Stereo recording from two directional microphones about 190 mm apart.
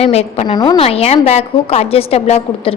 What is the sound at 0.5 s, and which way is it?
A woman's voice, 20° left (ahead or behind).